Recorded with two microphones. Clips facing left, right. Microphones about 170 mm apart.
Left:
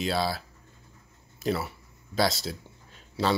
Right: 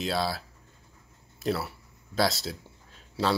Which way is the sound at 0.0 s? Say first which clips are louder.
Left 1 dB; centre (ahead or behind).